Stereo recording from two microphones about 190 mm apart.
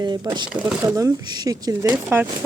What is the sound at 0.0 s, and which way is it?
Speech, 20° right (ahead or behind).